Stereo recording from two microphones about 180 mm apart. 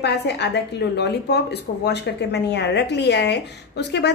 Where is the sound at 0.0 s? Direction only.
70° left (ahead or behind).